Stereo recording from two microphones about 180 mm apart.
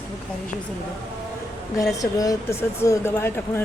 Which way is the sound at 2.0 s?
20° left (ahead or behind).